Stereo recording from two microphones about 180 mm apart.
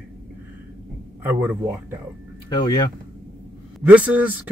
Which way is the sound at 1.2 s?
10° right (ahead or behind).